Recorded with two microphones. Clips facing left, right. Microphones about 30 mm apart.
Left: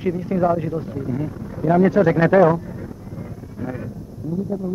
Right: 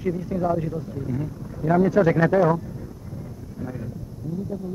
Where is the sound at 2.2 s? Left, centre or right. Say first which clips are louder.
Left 5 dB; left.